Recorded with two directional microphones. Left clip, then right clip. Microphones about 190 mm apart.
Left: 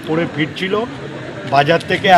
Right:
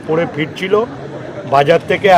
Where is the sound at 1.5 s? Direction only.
10° right (ahead or behind).